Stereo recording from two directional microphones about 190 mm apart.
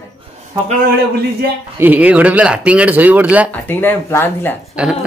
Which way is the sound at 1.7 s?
10° right (ahead or behind).